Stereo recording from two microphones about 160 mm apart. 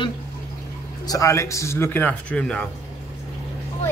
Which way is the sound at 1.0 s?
20° left (ahead or behind).